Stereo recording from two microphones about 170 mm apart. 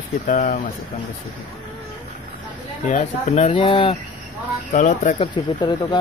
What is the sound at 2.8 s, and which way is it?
Speech, 40° left (ahead or behind).